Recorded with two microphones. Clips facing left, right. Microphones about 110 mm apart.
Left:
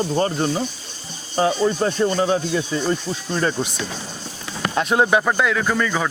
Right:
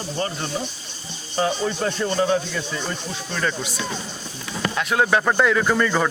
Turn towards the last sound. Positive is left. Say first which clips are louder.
# right 1 dB
turn(degrees=0)  # may be behind; listen again after turning